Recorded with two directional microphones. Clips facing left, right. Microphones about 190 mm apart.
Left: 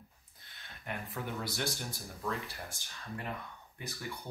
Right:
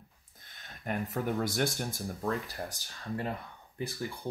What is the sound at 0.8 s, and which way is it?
Speech, 45° right (ahead or behind).